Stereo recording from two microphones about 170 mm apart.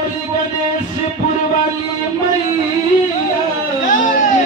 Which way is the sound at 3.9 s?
50° left (ahead or behind).